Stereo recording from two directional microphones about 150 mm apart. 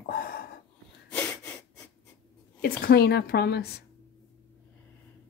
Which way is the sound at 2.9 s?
90° left.